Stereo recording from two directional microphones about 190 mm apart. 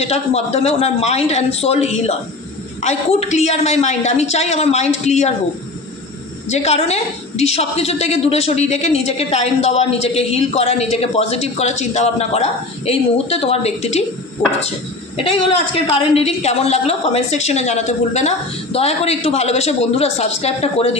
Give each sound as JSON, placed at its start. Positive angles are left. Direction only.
{"t": 0.0, "sound": "a woman's voice", "side_deg": 35}
{"t": 6.5, "sound": "a woman's voice", "side_deg": 35}
{"t": 15.2, "sound": "a woman's voice", "side_deg": 30}